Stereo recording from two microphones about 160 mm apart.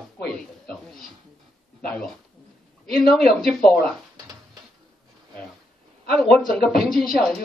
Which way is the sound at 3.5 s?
5° left (ahead or behind).